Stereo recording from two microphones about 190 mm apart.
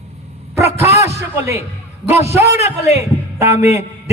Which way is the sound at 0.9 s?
35° left (ahead or behind).